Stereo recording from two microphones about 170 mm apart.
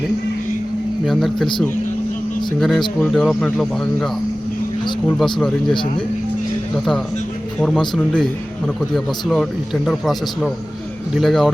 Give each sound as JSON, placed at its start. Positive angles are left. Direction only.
{"t": 1.0, "sound": "speech", "side_deg": 0}
{"t": 2.6, "sound": "speech", "side_deg": 0}
{"t": 4.9, "sound": "speech", "side_deg": 25}
{"t": 7.9, "sound": "speech", "side_deg": 0}